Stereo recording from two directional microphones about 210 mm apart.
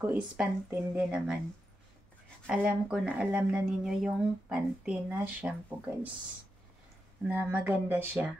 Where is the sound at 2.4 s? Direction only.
5° right (ahead or behind).